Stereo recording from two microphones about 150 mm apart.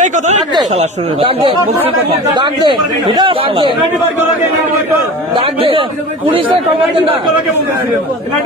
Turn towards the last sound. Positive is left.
turn(degrees=-35)  # may be behind; listen again after turning